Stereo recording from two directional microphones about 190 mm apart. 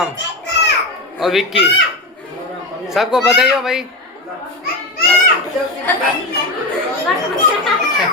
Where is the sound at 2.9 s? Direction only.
Centre (ahead or behind).